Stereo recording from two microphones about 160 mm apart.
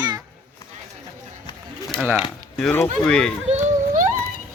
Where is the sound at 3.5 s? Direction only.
50° right (ahead or behind).